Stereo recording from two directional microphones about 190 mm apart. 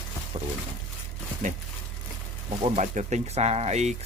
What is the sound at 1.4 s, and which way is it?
Speech, 40° right (ahead or behind).